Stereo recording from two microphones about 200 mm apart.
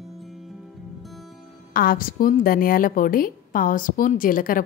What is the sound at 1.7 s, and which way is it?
A woman's voice, 45° left (ahead or behind).